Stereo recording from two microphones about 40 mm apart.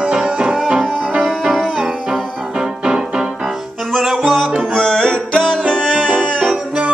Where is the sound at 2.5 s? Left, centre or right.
Right.